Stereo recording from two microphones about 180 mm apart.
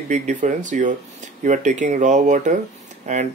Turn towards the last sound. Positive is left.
turn(degrees=-40)  # may be behind; listen again after turning